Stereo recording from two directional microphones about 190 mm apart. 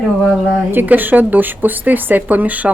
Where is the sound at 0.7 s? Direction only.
10° right (ahead or behind).